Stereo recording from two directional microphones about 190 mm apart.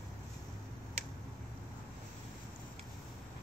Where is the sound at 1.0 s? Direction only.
35° right (ahead or behind).